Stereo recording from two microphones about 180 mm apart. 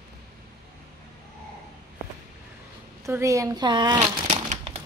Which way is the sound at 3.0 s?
15° right (ahead or behind).